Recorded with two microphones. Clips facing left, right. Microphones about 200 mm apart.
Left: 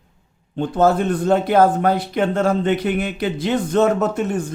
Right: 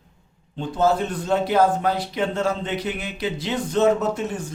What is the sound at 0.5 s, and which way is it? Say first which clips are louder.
Speech: left 4 dB; 55° left (ahead or behind).